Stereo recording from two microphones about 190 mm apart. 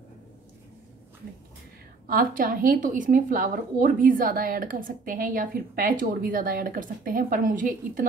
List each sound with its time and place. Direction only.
2.0 s a woman's voice: 50° right (ahead or behind)